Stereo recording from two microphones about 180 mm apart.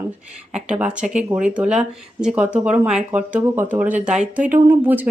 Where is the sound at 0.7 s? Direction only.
5° right (ahead or behind).